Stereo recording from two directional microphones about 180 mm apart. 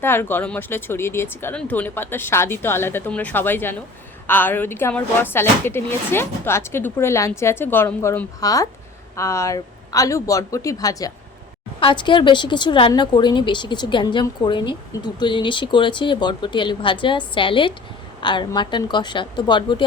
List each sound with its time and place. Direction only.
0.0 s a woman's voice: 10° left (ahead or behind)